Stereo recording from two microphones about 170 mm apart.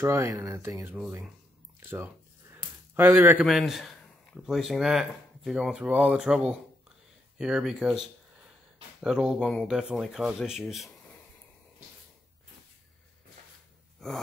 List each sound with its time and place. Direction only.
0.0 s speech: 15° right (ahead or behind)
1.8 s a sound: 15° right (ahead or behind)
3.4 s speech: centre (ahead or behind)
13.9 s gasp: centre (ahead or behind)